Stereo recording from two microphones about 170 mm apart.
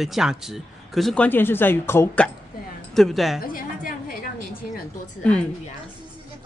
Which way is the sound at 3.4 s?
55° left (ahead or behind).